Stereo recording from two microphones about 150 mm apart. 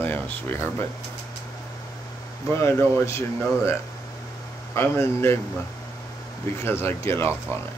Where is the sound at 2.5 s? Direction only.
15° left (ahead or behind).